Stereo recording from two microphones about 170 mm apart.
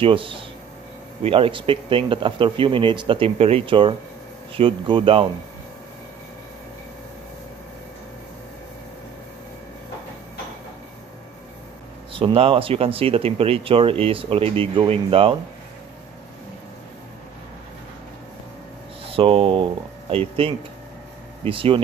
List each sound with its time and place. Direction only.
0.0 s speech: 30° right (ahead or behind)
12.1 s speech: 35° right (ahead or behind)
19.0 s speech: 35° right (ahead or behind)